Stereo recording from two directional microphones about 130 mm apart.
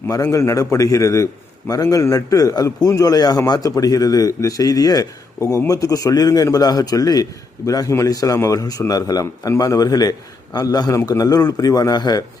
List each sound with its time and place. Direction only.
0.1 s a man's voice: 25° left (ahead or behind)